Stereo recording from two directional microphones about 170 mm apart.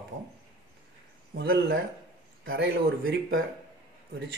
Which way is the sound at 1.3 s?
65° right (ahead or behind).